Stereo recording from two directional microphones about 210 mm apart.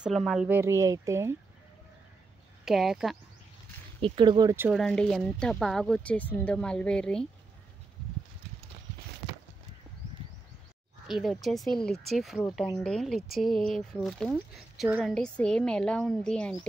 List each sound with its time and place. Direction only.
0.0 s speech: centre (ahead or behind)
2.6 s speech: centre (ahead or behind)
4.0 s speech: 25° right (ahead or behind)
4.7 s speech: centre (ahead or behind)
11.1 s speech: centre (ahead or behind)